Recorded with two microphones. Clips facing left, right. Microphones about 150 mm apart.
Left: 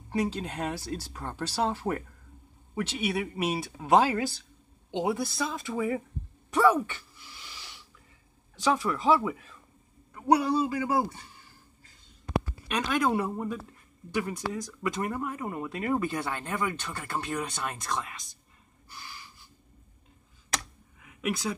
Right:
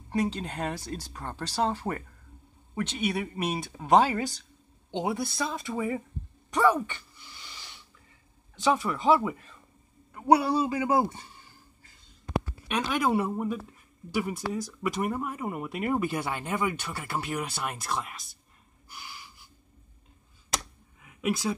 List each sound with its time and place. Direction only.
0.1 s speech: centre (ahead or behind)
6.5 s a sound: 5° left (ahead or behind)
8.5 s speech: centre (ahead or behind); by 11.2 s 20° right (ahead or behind)
12.6 s speech: centre (ahead or behind)
18.9 s snort: 15° right (ahead or behind)
21.0 s a sound: 5° right (ahead or behind)